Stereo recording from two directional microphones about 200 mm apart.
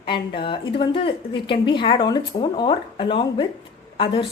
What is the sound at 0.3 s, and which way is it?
A woman's voice, 25° left (ahead or behind).